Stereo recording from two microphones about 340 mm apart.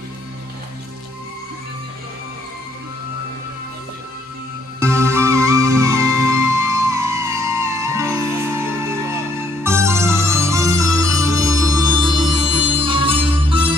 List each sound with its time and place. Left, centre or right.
4.7 s music: centre